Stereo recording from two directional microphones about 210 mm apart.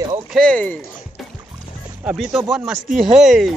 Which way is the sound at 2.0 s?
5° right (ahead or behind).